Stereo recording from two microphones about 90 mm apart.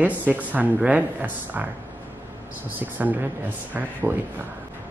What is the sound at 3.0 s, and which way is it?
Speech, 20° right (ahead or behind).